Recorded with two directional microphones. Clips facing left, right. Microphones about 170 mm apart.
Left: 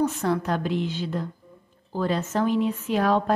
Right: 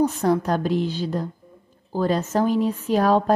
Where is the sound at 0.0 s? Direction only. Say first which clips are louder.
Right 4 dB; 40° right (ahead or behind).